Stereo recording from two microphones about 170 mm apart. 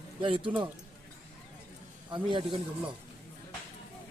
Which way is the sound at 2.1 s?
30° right (ahead or behind).